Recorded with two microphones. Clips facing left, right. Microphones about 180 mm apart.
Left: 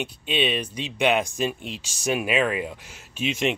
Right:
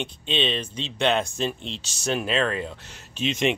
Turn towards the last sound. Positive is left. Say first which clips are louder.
# right 1 dB
turn(degrees=10)  # may be behind; listen again after turning